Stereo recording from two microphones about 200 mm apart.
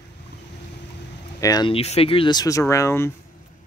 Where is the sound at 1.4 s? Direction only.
20° left (ahead or behind).